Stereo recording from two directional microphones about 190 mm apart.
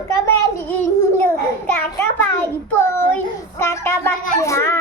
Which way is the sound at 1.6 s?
10° left (ahead or behind).